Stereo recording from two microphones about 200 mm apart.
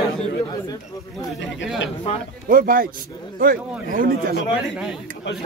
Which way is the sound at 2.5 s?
45° right (ahead or behind).